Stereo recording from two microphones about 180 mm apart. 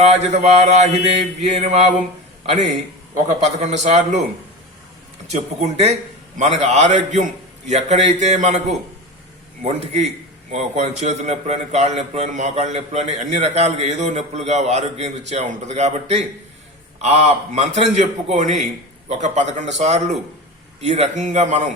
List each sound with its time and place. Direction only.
0.0 s a man's voice: 40° right (ahead or behind)
3.2 s a man's voice: 40° right (ahead or behind)
5.3 s a man's voice: 40° right (ahead or behind)
9.6 s a man's voice: 35° right (ahead or behind)